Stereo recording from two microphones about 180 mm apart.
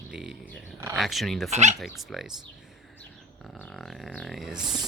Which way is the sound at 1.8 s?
Centre (ahead or behind).